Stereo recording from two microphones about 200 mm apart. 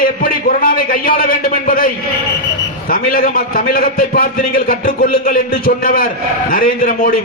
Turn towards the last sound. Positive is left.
turn(degrees=45)  # may be behind; listen again after turning